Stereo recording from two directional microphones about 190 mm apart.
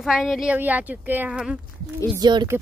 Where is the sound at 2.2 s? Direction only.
20° right (ahead or behind).